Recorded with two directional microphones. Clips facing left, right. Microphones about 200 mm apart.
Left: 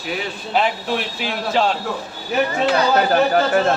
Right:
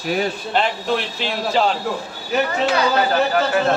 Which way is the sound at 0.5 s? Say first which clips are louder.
Left 1 dB; 5° left (ahead or behind).